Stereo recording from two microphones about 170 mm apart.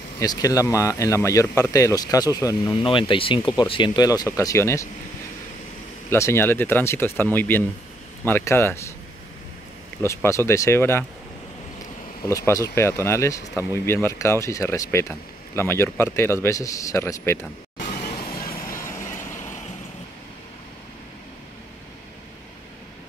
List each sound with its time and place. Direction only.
0.2 s speech: 20° left (ahead or behind)
6.0 s speech: 15° left (ahead or behind)
10.0 s speech: 15° left (ahead or behind)
12.3 s speech: 20° left (ahead or behind)
17.7 s music: 50° left (ahead or behind)
18.5 s vehicle: 15° left (ahead or behind)